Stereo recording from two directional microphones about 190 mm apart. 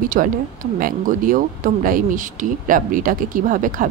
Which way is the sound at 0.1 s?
45° right (ahead or behind).